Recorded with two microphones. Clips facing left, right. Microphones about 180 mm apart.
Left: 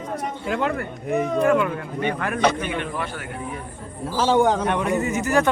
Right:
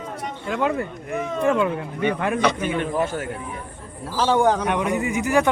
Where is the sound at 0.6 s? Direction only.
15° right (ahead or behind).